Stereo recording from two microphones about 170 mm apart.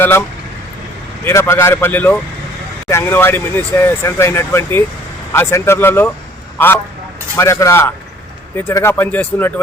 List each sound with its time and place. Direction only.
0.0 s speech: 10° left (ahead or behind)
7.3 s speech: 15° left (ahead or behind)